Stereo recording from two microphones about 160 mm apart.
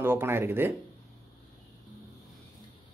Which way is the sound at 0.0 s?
15° right (ahead or behind).